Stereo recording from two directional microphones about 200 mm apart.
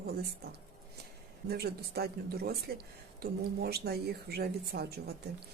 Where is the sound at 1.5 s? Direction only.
50° right (ahead or behind).